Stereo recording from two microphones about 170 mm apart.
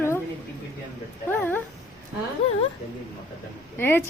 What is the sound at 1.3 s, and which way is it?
Speech, 10° left (ahead or behind).